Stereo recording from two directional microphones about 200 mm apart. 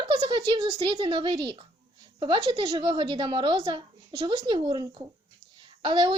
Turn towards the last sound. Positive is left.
turn(degrees=-25)  # may be behind; listen again after turning